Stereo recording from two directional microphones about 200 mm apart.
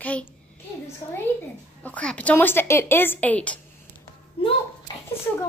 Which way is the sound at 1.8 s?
5° left (ahead or behind).